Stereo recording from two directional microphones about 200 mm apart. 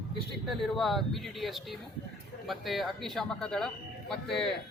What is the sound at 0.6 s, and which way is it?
Speech, centre (ahead or behind).